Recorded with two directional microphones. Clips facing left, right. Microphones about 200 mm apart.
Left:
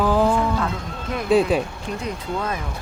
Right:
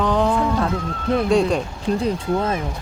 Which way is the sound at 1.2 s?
5° left (ahead or behind).